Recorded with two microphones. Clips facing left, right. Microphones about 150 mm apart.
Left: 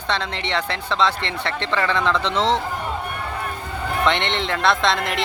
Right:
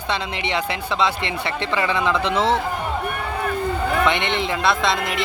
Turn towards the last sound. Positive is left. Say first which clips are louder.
# left 1 dB
turn(degrees=-5)  # may be behind; listen again after turning